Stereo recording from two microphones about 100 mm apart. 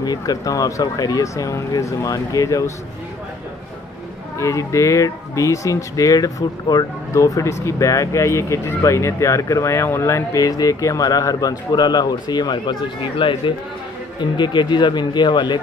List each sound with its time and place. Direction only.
0.0 s speech: 40° left (ahead or behind)
4.4 s speech: 30° left (ahead or behind)
13.0 s speech: 60° left (ahead or behind)
14.2 s speech: 50° left (ahead or behind)